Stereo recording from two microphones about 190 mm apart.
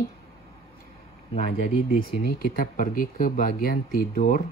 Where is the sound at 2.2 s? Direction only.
50° left (ahead or behind).